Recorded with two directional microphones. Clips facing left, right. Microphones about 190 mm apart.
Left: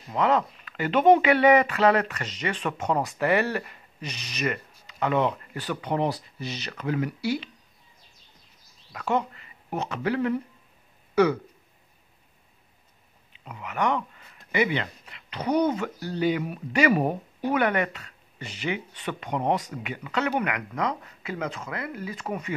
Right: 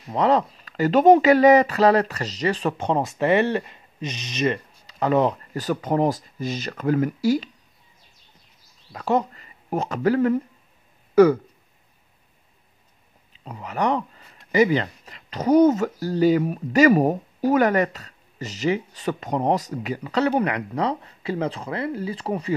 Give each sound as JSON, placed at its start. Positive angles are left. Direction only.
{"t": 0.1, "sound": "speech", "side_deg": -35}
{"t": 4.8, "sound": "speech", "side_deg": -35}
{"t": 8.9, "sound": "speech", "side_deg": -35}
{"t": 13.3, "sound": "speech", "side_deg": -35}